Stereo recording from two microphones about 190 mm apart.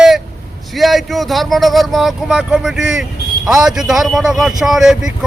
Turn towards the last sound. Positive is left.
turn(degrees=-5)  # may be behind; listen again after turning